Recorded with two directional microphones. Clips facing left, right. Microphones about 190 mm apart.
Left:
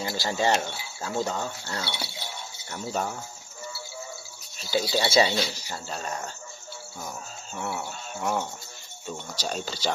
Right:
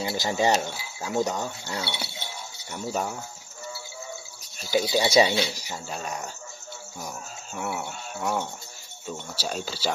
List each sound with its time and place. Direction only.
0.0 s speech: 20° right (ahead or behind)
4.6 s speech: 15° right (ahead or behind)
7.5 s speech: 10° right (ahead or behind)